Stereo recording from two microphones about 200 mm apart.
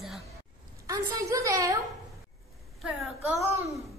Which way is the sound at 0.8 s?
15° right (ahead or behind).